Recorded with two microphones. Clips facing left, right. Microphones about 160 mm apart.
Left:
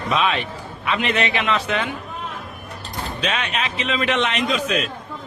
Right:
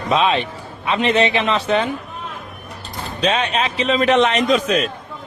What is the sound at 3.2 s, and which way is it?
A man's voice, 35° right (ahead or behind).